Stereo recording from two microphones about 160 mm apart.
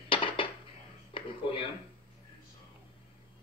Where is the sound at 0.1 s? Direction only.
30° left (ahead or behind).